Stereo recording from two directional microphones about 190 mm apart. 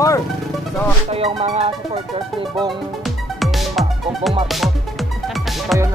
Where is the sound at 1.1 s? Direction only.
30° right (ahead or behind).